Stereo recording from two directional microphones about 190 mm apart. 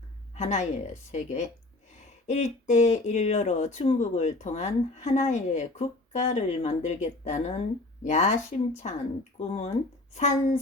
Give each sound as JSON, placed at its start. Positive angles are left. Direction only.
{"t": 0.3, "sound": "speech", "side_deg": 40}